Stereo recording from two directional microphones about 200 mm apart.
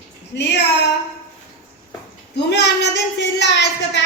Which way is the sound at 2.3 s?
60° left (ahead or behind).